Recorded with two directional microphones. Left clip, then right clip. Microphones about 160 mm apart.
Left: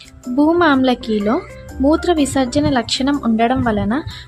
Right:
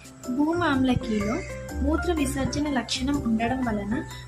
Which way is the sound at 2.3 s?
60° left (ahead or behind).